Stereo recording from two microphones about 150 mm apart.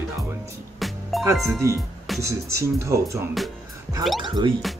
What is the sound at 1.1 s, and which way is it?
Music, centre (ahead or behind).